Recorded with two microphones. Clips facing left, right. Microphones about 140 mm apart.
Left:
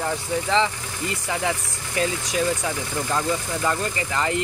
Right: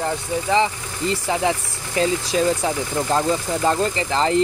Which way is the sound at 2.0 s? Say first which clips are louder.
Right 4 dB; 25° right (ahead or behind).